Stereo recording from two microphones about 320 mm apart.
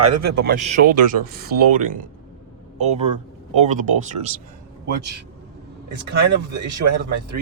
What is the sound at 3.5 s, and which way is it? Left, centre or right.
Speech, right.